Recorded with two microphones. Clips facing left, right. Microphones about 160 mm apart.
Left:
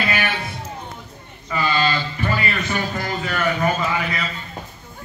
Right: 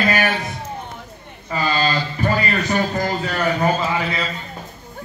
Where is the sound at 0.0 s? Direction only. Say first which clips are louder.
Right 4 dB; 40° right (ahead or behind).